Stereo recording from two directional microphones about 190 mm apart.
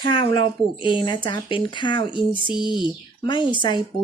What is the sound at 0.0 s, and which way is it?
Speech, 25° left (ahead or behind).